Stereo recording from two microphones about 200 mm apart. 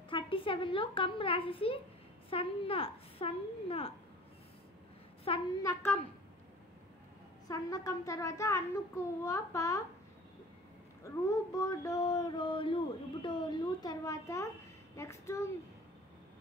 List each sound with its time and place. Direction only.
0.1 s a child's voice: 25° left (ahead or behind)
2.2 s child singing: 25° left (ahead or behind)
5.3 s child singing: 25° left (ahead or behind)
7.4 s a child's voice: 20° left (ahead or behind)
11.2 s child singing: 15° left (ahead or behind)
15.0 s a child's voice: 15° left (ahead or behind)